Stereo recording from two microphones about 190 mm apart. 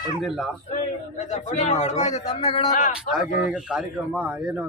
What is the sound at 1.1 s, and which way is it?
A man's voice, 40° left (ahead or behind).